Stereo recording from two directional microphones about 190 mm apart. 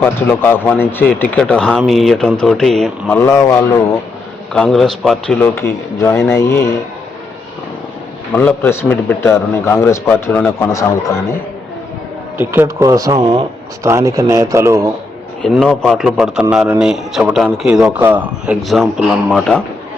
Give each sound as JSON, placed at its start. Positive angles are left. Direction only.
{"t": 0.0, "sound": "a man's voice", "side_deg": 10}
{"t": 3.2, "sound": "a man's voice", "side_deg": 15}
{"t": 4.5, "sound": "a man's voice", "side_deg": 0}
{"t": 5.5, "sound": "a man's voice", "side_deg": 15}
{"t": 8.3, "sound": "a man's voice", "side_deg": 10}
{"t": 12.4, "sound": "a man's voice", "side_deg": -10}
{"t": 15.4, "sound": "a man's voice", "side_deg": 0}